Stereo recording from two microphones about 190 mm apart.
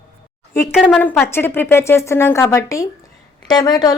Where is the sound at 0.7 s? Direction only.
5° right (ahead or behind).